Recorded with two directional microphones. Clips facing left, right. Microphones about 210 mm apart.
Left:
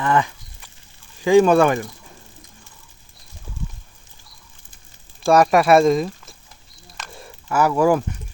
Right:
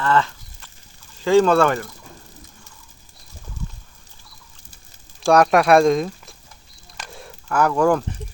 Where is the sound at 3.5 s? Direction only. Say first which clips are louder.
Left 1 dB; 10° left (ahead or behind).